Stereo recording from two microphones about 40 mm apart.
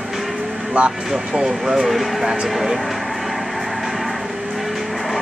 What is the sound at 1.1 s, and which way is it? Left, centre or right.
Speech, centre.